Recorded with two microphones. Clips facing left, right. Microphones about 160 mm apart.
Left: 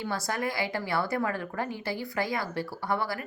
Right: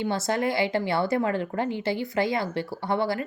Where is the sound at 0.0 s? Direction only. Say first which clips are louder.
Right 6 dB; 25° right (ahead or behind).